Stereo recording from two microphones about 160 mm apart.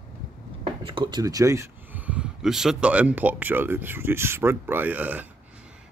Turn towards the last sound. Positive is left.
turn(degrees=-10)  # may be behind; listen again after turning